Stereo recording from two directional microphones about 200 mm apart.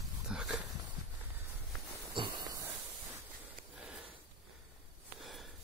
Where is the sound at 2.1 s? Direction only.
20° right (ahead or behind).